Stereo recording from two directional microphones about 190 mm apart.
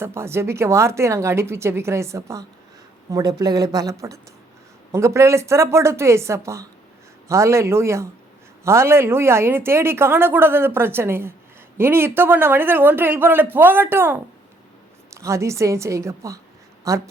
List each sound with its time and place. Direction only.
0.0 s a woman's voice: 15° right (ahead or behind)